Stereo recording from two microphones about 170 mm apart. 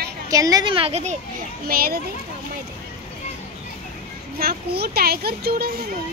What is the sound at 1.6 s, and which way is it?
Speech, 60° right (ahead or behind).